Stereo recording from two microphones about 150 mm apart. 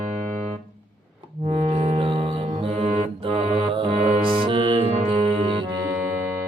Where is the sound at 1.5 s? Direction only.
45° right (ahead or behind).